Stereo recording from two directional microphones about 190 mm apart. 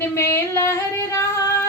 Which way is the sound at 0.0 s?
15° left (ahead or behind).